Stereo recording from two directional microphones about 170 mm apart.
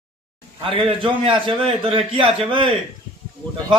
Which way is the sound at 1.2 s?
30° right (ahead or behind).